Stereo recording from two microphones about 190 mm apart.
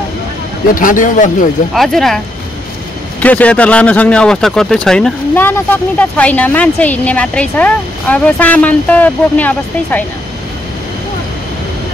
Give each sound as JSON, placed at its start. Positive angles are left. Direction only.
{"t": 0.7, "sound": "speech", "side_deg": 45}
{"t": 1.7, "sound": "speech", "side_deg": 0}